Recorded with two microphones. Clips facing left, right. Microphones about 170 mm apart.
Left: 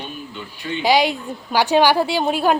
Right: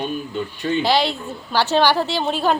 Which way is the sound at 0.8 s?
10° left (ahead or behind).